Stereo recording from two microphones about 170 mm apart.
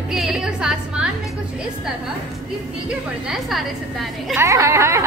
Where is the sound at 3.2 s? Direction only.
Centre (ahead or behind).